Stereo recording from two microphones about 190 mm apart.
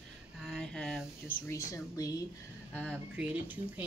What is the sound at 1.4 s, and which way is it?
Speech, 15° left (ahead or behind).